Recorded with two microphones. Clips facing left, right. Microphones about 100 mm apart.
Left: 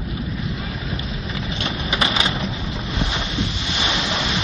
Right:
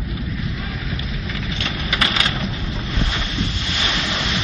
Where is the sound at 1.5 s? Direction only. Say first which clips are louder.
Left 1 dB; 20° left (ahead or behind).